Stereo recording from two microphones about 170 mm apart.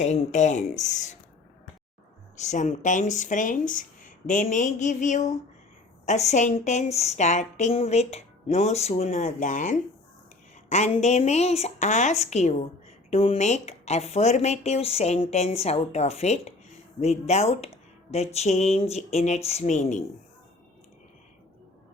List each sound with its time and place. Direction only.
0.0 s a woman's voice: 45° left (ahead or behind)
2.3 s a woman's voice: 45° left (ahead or behind)